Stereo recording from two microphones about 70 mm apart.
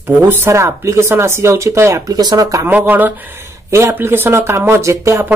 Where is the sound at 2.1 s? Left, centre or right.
Right.